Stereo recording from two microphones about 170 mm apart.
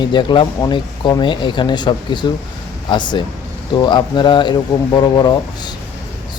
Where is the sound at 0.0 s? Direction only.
25° left (ahead or behind).